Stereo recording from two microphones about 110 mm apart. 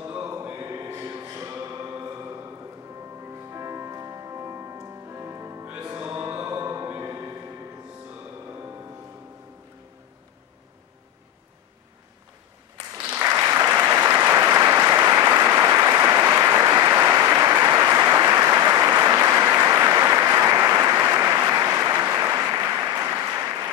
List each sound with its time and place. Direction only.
0.0 s music: 25° right (ahead or behind)
3.5 s music: 25° right (ahead or behind)
8.5 s music: 25° right (ahead or behind)
13.1 s applause: 25° right (ahead or behind)